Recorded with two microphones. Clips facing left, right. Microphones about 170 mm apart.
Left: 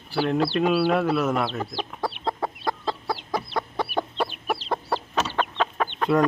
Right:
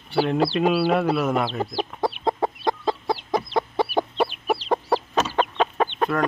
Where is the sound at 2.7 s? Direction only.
15° right (ahead or behind).